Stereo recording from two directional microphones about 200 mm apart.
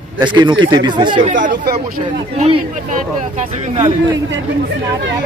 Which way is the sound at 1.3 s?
40° right (ahead or behind).